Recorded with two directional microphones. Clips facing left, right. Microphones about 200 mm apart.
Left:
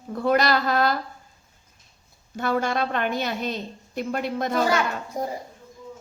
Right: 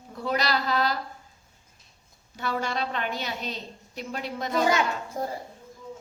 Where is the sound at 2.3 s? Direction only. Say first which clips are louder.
Left 5 dB; 50° left (ahead or behind).